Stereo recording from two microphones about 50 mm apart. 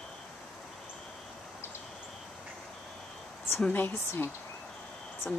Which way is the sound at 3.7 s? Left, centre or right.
Left.